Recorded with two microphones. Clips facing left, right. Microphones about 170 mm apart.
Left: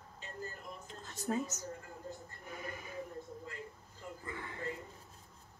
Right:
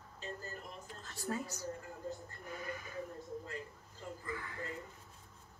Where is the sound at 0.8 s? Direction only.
20° left (ahead or behind).